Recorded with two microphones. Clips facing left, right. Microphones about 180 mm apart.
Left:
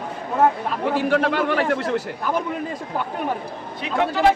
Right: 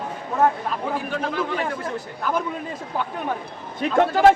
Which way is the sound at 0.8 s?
80° left.